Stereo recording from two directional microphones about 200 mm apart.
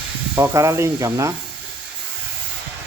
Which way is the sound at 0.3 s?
10° right (ahead or behind).